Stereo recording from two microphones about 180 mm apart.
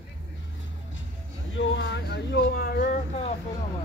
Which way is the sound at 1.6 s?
90° left.